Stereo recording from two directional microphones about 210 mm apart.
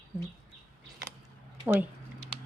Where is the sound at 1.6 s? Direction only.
10° right (ahead or behind).